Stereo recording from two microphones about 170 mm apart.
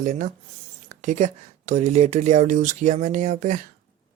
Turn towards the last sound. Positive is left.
turn(degrees=-45)  # may be behind; listen again after turning